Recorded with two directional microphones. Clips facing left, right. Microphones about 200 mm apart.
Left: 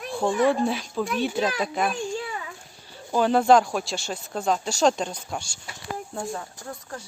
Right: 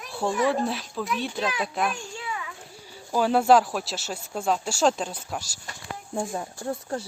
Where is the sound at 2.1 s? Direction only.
40° left (ahead or behind).